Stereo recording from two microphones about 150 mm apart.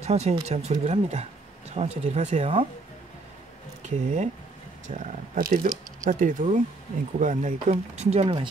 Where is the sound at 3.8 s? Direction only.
50° right (ahead or behind).